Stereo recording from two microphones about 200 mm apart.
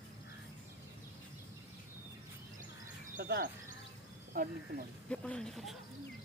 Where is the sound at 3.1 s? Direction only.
45° right (ahead or behind).